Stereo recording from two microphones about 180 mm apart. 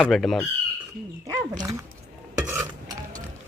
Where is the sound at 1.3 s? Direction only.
20° right (ahead or behind).